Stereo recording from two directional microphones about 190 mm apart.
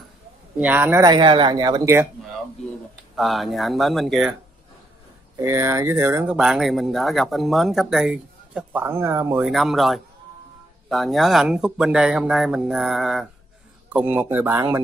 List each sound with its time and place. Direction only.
0.6 s speech: 10° right (ahead or behind)
3.2 s speech: centre (ahead or behind)
5.4 s speech: 15° right (ahead or behind)
9.4 s speech: centre (ahead or behind)